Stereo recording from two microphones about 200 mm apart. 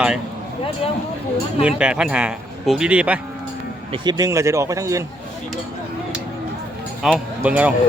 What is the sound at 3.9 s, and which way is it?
A man's voice, 20° right (ahead or behind).